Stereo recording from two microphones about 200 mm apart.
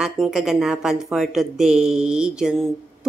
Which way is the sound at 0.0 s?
Centre (ahead or behind).